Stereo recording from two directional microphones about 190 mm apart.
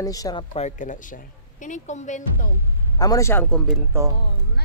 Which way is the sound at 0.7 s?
40° left (ahead or behind).